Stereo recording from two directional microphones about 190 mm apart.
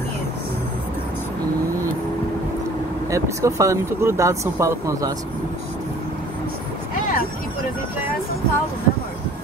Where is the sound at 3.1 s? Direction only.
15° right (ahead or behind).